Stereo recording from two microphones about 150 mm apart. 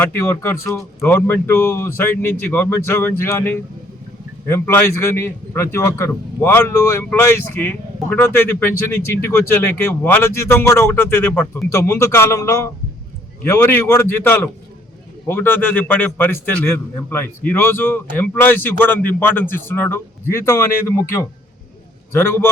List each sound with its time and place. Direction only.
0.0 s a man's voice: 15° left (ahead or behind)